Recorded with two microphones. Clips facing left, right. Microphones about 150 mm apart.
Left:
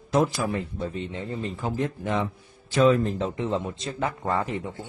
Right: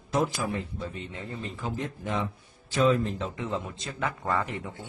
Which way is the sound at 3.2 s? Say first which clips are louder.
Left 5 dB; 30° left (ahead or behind).